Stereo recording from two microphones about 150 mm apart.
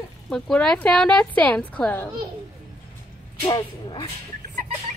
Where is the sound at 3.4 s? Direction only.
35° left (ahead or behind).